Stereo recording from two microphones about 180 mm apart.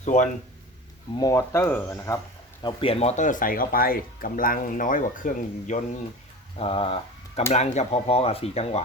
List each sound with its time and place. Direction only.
0.0 s speech: 45° left (ahead or behind)
1.1 s speech: 20° left (ahead or behind)
2.6 s speech: 30° left (ahead or behind); by 5.8 s 45° left (ahead or behind)
6.6 s speech: 30° left (ahead or behind)